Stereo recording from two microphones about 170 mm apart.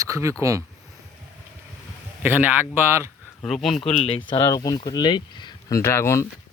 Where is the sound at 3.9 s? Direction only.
35° left (ahead or behind); by 6.2 s 15° left (ahead or behind).